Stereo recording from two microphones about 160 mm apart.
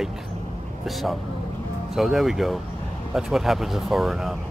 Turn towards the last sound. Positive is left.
turn(degrees=0)  # may be behind; listen again after turning